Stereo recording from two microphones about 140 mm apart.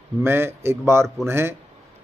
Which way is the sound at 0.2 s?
15° right (ahead or behind).